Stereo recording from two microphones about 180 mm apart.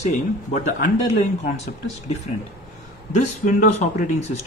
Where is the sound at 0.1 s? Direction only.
45° left (ahead or behind).